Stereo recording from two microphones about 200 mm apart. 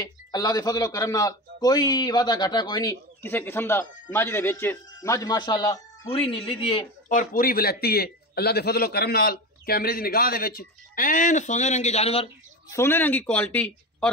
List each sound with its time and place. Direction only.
0.0 s a man's voice: 20° left (ahead or behind)
7.1 s a man's voice: 45° left (ahead or behind)
12.7 s speech: 10° left (ahead or behind)